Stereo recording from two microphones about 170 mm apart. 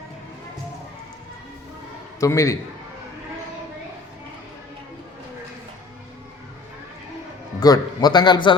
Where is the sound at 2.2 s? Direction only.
20° left (ahead or behind).